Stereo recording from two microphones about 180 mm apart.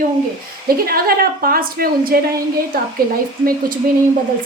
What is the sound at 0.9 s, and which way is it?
A woman's voice, 55° right (ahead or behind).